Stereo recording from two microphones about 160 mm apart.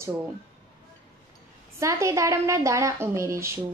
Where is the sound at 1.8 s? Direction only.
20° right (ahead or behind).